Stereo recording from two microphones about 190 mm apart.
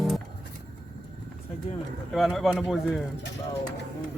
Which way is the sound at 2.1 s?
Centre (ahead or behind).